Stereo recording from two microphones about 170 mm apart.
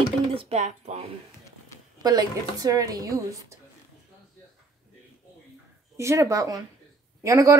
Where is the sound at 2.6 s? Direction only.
20° right (ahead or behind).